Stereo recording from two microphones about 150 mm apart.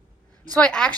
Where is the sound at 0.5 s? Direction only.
5° left (ahead or behind).